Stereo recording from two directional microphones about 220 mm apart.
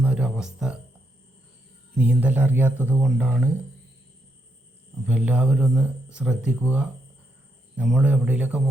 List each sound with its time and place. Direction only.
0.0 s speech: 5° right (ahead or behind)
2.0 s speech: 5° right (ahead or behind)
5.0 s a man's voice: 5° right (ahead or behind)